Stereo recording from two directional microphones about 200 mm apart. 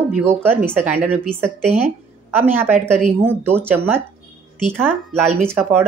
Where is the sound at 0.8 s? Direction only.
10° right (ahead or behind).